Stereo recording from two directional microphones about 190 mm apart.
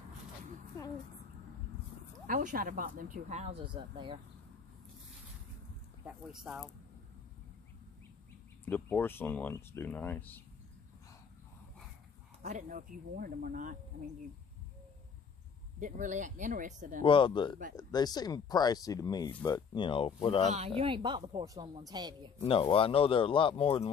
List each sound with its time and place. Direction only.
2.2 s speech: 45° right (ahead or behind); by 4.2 s 25° right (ahead or behind)
6.0 s speech: 5° right (ahead or behind)
8.6 s speech: 10° left (ahead or behind)
12.4 s speech: 45° right (ahead or behind)
15.8 s speech: 40° right (ahead or behind)
17.0 s speech: 25° left (ahead or behind)
20.4 s speech: 35° right (ahead or behind)
22.4 s speech: 30° left (ahead or behind)